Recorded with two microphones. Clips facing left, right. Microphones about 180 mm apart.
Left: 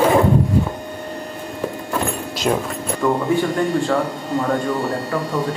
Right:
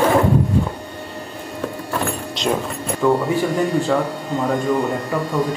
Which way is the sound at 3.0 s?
Centre (ahead or behind).